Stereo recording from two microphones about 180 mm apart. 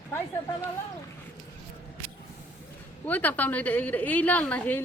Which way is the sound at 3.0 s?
10° left (ahead or behind).